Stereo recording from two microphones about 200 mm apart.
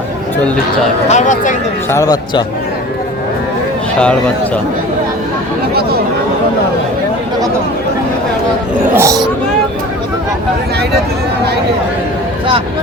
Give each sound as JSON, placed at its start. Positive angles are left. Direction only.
{"t": 1.0, "sound": "speech", "side_deg": 35}
{"t": 1.9, "sound": "speech", "side_deg": 15}
{"t": 9.0, "sound": "speech", "side_deg": -15}